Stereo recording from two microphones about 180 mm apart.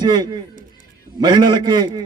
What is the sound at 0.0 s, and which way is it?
A man's voice, 25° right (ahead or behind).